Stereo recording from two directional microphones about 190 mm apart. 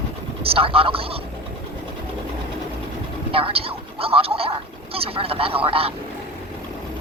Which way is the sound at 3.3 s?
30° right (ahead or behind).